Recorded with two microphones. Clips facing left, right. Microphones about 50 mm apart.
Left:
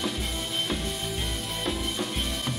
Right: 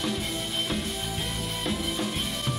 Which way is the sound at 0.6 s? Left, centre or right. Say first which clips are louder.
Left 1 dB; centre.